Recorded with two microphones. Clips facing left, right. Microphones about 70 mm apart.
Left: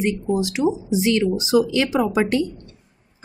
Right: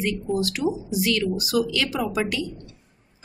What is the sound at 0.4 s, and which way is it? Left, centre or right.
Speech, centre.